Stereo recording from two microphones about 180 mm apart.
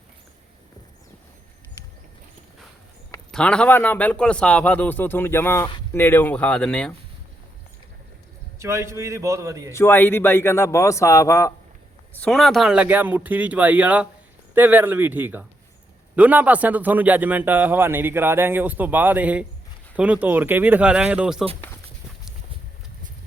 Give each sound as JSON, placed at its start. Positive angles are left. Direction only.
{"t": 3.3, "sound": "a man's voice", "side_deg": 5}
{"t": 8.5, "sound": "a man's voice", "side_deg": -15}
{"t": 9.7, "sound": "a man's voice", "side_deg": 10}
{"t": 12.1, "sound": "a man's voice", "side_deg": 5}